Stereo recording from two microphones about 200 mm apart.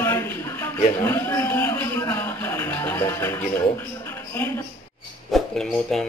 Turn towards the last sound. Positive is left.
turn(degrees=0)  # may be behind; listen again after turning